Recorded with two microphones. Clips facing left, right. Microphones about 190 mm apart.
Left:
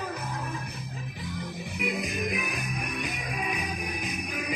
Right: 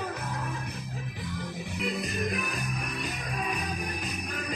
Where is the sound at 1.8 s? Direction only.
10° left (ahead or behind).